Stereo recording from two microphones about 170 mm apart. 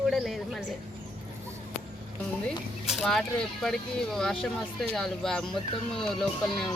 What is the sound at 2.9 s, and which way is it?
A woman's voice, centre (ahead or behind).